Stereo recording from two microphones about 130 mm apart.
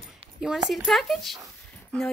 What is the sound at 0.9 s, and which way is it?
Speech, centre (ahead or behind).